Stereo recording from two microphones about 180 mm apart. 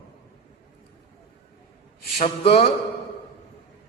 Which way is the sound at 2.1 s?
35° left (ahead or behind).